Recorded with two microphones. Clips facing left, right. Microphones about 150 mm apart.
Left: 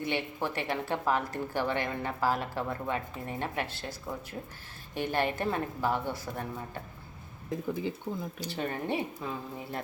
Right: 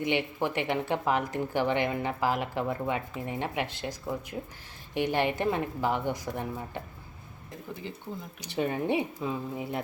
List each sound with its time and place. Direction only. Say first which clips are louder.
0.0 s speech: right 4 dB; 15° right (ahead or behind)
8.4 s speech: right 4 dB; 15° right (ahead or behind)